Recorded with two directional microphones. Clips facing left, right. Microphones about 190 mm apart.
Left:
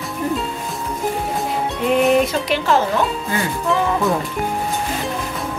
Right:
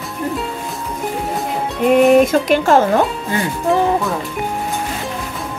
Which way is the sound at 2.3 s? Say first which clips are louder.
Right 5 dB; 50° right (ahead or behind).